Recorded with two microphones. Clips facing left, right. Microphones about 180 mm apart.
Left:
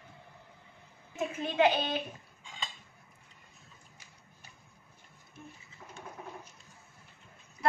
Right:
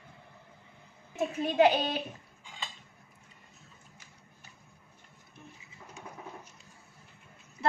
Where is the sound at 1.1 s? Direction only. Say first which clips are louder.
Right 3 dB; 40° right (ahead or behind).